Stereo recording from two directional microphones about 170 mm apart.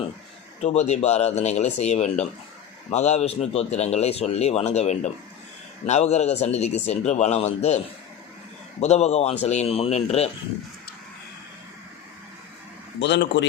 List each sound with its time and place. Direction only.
0.6 s speech: 40° left (ahead or behind)
8.8 s speech: 40° left (ahead or behind)
13.0 s speech: 90° left